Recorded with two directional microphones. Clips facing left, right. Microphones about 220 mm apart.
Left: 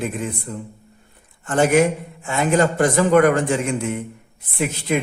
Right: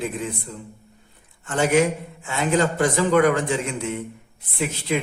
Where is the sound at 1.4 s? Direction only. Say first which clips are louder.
Left 3 dB; 50° left (ahead or behind).